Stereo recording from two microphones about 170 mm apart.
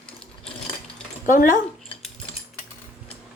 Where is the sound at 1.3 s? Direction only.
50° left (ahead or behind).